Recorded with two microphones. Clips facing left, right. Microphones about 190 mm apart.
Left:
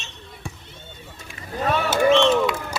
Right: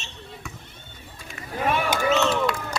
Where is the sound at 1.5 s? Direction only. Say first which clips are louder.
Left 2 dB; 10° right (ahead or behind).